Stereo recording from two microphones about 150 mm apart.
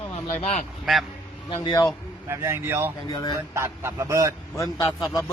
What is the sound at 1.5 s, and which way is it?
Speech, 30° left (ahead or behind).